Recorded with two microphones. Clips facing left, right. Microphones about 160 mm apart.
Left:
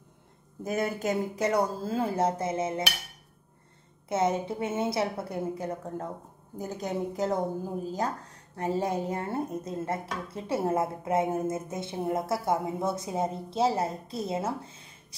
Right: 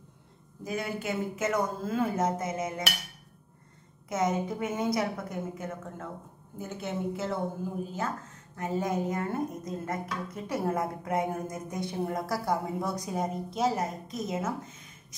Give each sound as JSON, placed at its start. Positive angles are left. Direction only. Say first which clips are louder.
{"t": 0.7, "sound": "speech", "louder": "left 4 dB", "side_deg": 45}
{"t": 4.1, "sound": "a woman's voice", "louder": "left 2 dB", "side_deg": 30}